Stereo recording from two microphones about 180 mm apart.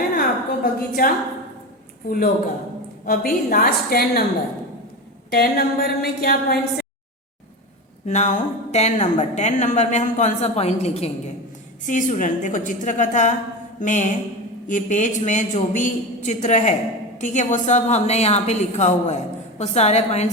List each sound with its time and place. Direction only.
0.2 s a sound: 55° left (ahead or behind)
2.0 s a man's voice: 55° left (ahead or behind)
5.3 s a woman's voice: 60° left (ahead or behind)
8.0 s a woman's voice: 40° left (ahead or behind)